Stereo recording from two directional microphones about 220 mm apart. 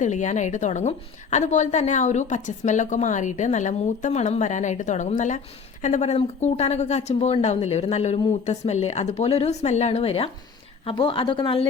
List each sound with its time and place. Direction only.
0.0 s a woman's voice: 35° left (ahead or behind)